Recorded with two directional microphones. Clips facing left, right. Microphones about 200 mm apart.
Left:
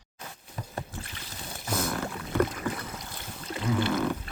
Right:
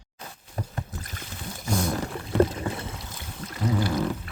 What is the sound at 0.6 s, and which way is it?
Boat, 45° right (ahead or behind).